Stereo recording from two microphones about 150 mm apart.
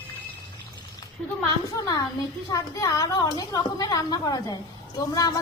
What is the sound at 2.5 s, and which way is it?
A woman's voice, 25° left (ahead or behind).